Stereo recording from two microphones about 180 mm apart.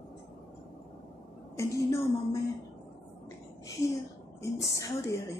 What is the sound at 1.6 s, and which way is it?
Music, 15° left (ahead or behind).